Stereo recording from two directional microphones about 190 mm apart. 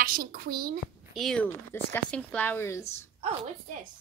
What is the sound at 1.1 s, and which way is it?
Speech, 5° left (ahead or behind).